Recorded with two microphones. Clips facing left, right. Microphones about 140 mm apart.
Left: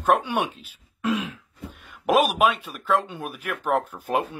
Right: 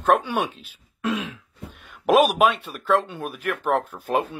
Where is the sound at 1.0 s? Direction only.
10° left (ahead or behind).